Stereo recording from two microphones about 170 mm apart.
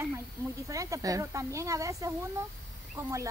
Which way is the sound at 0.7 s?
20° right (ahead or behind).